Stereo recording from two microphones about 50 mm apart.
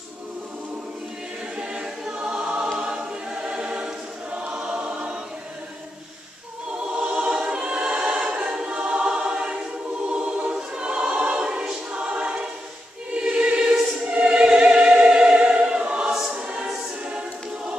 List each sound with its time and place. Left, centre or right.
1.6 s choir: centre
7.0 s choir: right
14.1 s opera: centre
16.1 s choir: centre